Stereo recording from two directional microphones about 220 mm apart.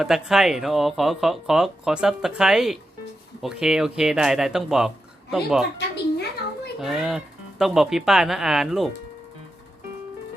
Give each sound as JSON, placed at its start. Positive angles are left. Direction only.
{"t": 0.0, "sound": "speech", "side_deg": 0}
{"t": 5.7, "sound": "a sound", "side_deg": 50}
{"t": 6.7, "sound": "speech", "side_deg": 0}